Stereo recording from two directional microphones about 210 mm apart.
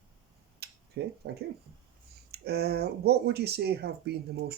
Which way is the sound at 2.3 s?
50° right (ahead or behind).